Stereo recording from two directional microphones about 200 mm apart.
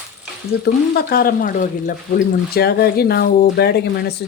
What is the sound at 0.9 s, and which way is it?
Speech, 50° left (ahead or behind).